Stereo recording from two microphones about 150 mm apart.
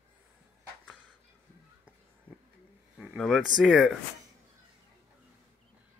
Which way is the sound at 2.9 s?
Centre (ahead or behind).